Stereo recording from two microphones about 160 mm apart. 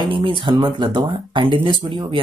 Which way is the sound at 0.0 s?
30° right (ahead or behind).